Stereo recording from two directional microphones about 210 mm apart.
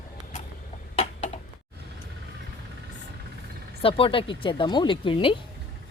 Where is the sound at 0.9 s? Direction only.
30° left (ahead or behind).